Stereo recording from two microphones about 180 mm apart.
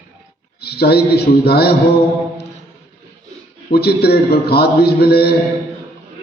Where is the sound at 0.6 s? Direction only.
60° left (ahead or behind).